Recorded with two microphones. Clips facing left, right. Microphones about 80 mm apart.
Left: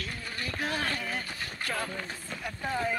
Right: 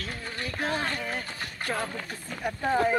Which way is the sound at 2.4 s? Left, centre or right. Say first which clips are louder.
Right 7 dB; right.